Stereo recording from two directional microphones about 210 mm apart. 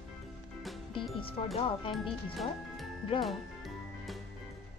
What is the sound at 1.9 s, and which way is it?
Speech, centre (ahead or behind).